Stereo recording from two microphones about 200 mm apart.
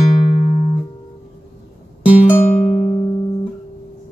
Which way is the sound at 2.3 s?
40° left (ahead or behind).